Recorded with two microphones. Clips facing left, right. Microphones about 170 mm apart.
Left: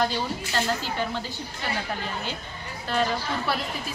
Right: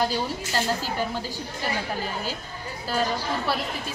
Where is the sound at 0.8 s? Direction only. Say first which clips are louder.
Right 1 dB; 10° right (ahead or behind).